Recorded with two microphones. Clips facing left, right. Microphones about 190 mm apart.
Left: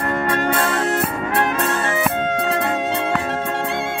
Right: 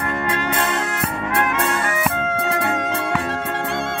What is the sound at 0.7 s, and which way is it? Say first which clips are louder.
Music: left 4 dB; 30° left (ahead or behind).